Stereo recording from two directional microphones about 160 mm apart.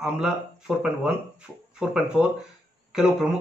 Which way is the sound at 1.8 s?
Centre (ahead or behind).